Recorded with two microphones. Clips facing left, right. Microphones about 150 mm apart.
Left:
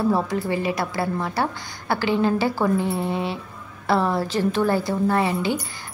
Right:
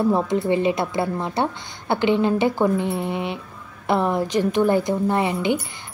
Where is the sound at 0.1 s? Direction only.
20° right (ahead or behind).